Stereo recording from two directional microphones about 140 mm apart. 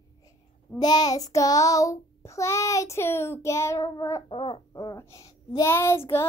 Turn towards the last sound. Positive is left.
turn(degrees=20)  # may be behind; listen again after turning